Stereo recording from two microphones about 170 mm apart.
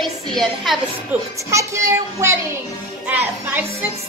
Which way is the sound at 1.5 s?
15° right (ahead or behind).